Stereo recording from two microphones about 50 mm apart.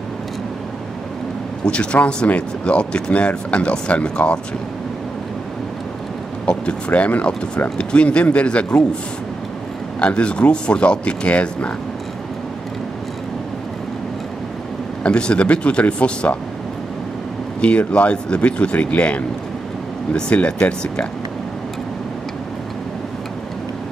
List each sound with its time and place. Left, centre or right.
1.6 s speech: left
6.4 s speech: centre
6.9 s speech: left
7.7 s speech: left
9.9 s speech: left
15.0 s speech: left
17.6 s speech: left